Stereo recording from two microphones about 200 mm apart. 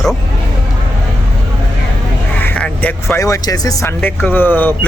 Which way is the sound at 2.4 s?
5° left (ahead or behind).